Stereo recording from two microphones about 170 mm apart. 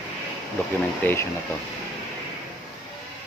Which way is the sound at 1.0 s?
10° left (ahead or behind).